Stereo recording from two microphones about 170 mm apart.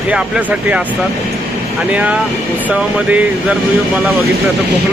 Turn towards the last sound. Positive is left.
turn(degrees=-5)  # may be behind; listen again after turning